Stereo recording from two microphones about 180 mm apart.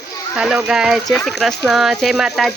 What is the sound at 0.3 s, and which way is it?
Speech, 5° right (ahead or behind).